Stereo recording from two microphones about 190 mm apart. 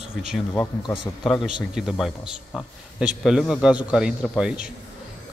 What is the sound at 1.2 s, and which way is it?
A man's voice, centre (ahead or behind).